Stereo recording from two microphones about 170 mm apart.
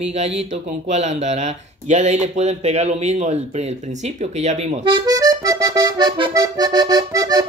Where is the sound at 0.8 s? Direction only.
45° right (ahead or behind).